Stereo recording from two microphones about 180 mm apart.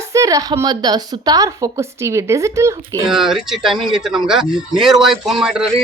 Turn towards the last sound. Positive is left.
turn(degrees=-5)  # may be behind; listen again after turning